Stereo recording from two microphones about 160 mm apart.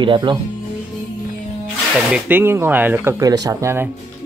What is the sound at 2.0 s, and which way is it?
Speech, 10° right (ahead or behind).